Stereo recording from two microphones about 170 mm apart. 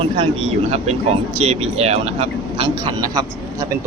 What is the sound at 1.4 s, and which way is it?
Speech, 40° right (ahead or behind).